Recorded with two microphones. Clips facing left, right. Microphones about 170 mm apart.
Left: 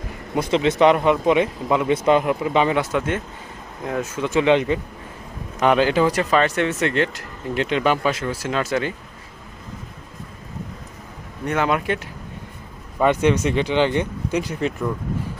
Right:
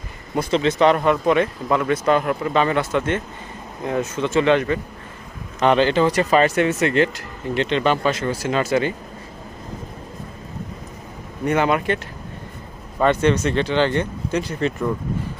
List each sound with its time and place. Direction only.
0.3 s speech: 15° left (ahead or behind)
5.5 s speech: 5° left (ahead or behind)
6.3 s speech: 5° right (ahead or behind)
11.4 s speech: centre (ahead or behind)
13.0 s speech: 10° left (ahead or behind)